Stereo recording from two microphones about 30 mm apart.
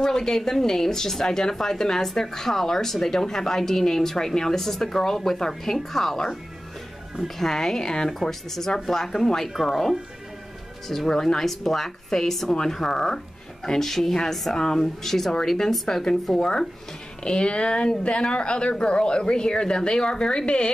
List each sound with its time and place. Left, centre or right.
0.0 s a woman's voice: centre
7.3 s a woman's voice: centre
8.3 s a woman's voice: centre
11.1 s a woman's voice: centre
13.7 s a woman's voice: centre; by 20.7 s left